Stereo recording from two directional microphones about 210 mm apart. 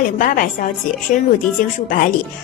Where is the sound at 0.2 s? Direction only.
40° left (ahead or behind).